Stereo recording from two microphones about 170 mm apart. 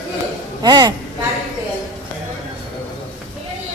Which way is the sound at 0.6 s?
25° right (ahead or behind).